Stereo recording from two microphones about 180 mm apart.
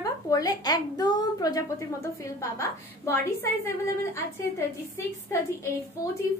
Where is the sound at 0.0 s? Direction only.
20° left (ahead or behind).